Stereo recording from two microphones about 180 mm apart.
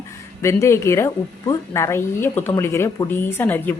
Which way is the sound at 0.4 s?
15° left (ahead or behind).